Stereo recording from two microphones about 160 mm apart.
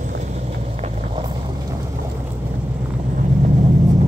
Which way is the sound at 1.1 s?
30° right (ahead or behind).